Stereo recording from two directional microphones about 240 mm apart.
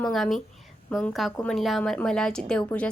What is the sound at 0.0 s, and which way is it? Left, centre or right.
Speech, centre.